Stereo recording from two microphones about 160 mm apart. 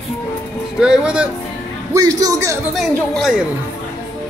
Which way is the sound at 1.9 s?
25° right (ahead or behind).